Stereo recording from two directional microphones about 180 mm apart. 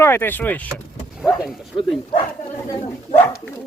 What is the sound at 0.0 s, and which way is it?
Speech, 10° left (ahead or behind).